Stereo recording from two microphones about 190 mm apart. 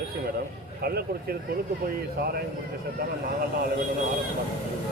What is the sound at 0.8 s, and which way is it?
Speech, 55° right (ahead or behind).